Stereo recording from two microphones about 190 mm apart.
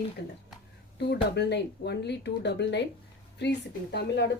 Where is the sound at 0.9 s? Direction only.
60° left (ahead or behind).